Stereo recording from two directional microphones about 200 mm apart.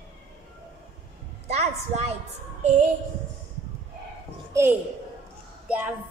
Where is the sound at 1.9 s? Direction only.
35° right (ahead or behind).